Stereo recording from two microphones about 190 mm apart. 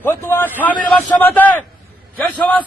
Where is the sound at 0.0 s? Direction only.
10° left (ahead or behind).